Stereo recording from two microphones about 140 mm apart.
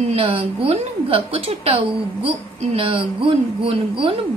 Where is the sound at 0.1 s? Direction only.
40° right (ahead or behind).